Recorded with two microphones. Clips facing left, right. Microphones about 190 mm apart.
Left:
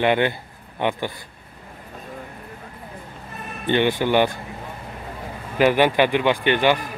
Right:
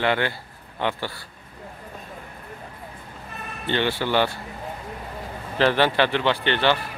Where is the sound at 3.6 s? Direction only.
15° left (ahead or behind).